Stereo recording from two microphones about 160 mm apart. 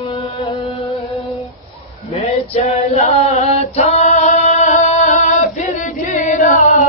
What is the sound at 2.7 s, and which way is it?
Singing, 45° left (ahead or behind).